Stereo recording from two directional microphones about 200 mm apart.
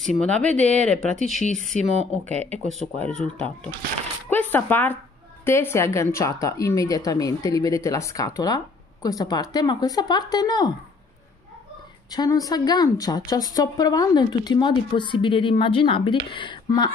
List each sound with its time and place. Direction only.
0.0 s speech: centre (ahead or behind)
0.4 s speech: 35° right (ahead or behind)
0.8 s speech: 5° left (ahead or behind)
1.2 s speech: 35° left (ahead or behind)
2.3 s speech: 35° right (ahead or behind)
2.7 s speech: 5° left (ahead or behind); by 10.7 s 20° left (ahead or behind)
12.1 s a woman's voice: 20° left (ahead or behind)